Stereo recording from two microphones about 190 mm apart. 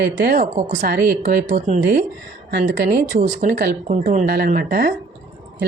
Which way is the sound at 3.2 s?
40° right (ahead or behind).